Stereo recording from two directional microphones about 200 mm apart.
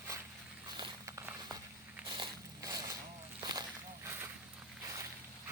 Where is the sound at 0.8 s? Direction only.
15° right (ahead or behind).